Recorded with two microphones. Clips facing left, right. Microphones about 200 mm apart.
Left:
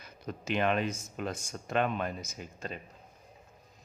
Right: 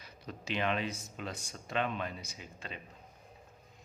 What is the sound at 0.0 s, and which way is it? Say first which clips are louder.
Speech: left 5 dB; 50° left (ahead or behind).